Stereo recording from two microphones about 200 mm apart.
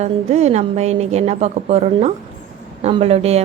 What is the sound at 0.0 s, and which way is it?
A woman's voice, 35° right (ahead or behind).